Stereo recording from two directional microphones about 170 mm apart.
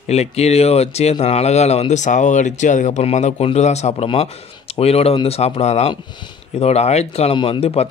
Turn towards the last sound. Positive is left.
turn(degrees=35)  # may be behind; listen again after turning